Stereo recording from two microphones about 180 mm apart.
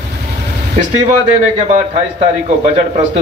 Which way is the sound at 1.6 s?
40° right (ahead or behind).